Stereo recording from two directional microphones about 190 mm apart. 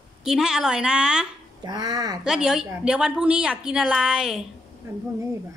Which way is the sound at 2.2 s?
5° right (ahead or behind).